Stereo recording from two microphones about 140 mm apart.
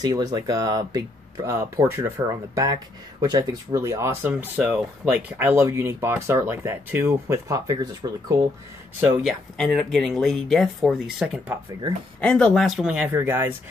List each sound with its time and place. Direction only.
0.0 s speech: 30° right (ahead or behind)
9.1 s speech: 5° right (ahead or behind)
12.2 s speech: 10° left (ahead or behind); by 13.6 s 15° right (ahead or behind)